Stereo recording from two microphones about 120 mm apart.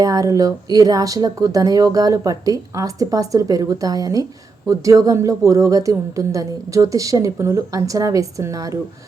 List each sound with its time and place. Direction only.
0.0 s speech: 30° right (ahead or behind)